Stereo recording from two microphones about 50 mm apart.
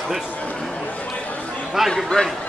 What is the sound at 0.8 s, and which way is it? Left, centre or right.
Chatter, left.